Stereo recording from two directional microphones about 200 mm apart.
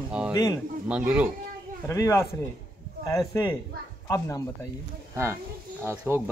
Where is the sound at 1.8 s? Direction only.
15° left (ahead or behind).